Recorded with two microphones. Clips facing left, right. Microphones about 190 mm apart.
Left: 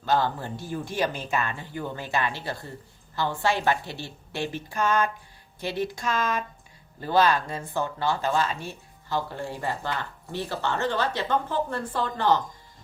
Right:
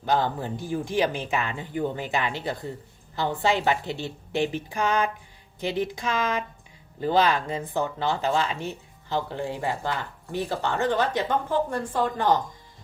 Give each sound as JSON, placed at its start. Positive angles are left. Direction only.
{"t": 0.0, "sound": "a woman's voice", "side_deg": -15}